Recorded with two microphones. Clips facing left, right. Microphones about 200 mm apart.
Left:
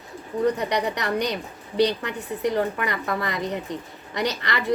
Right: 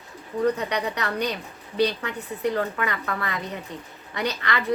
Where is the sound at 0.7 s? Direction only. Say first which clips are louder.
Left 3 dB; 15° left (ahead or behind).